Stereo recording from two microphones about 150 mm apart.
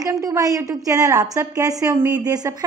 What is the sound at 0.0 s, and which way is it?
A woman's voice, 25° right (ahead or behind).